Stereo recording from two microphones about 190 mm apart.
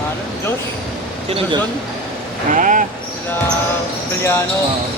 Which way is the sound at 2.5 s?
45° right (ahead or behind).